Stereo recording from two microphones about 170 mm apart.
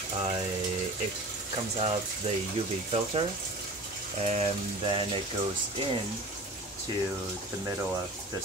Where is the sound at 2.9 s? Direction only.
35° right (ahead or behind).